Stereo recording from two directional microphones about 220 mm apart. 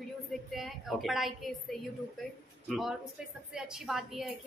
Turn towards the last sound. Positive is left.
turn(degrees=0)  # may be behind; listen again after turning